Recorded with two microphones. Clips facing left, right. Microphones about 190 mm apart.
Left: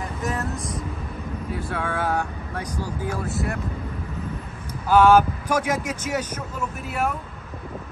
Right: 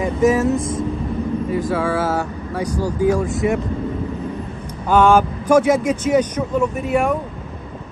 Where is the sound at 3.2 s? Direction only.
Centre (ahead or behind).